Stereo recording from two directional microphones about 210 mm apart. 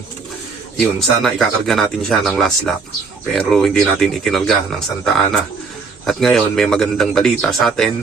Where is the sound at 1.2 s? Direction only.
Centre (ahead or behind).